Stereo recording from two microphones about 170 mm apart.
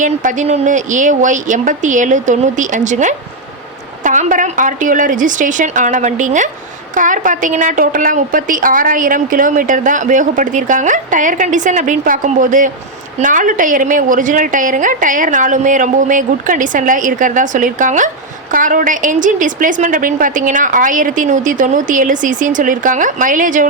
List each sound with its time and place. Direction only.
0.0 s a woman's voice: 50° right (ahead or behind)